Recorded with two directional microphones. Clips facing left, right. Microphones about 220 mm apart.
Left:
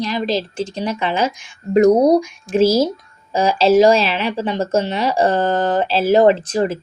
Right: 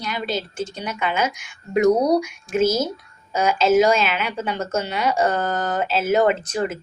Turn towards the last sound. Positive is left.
turn(degrees=30)  # may be behind; listen again after turning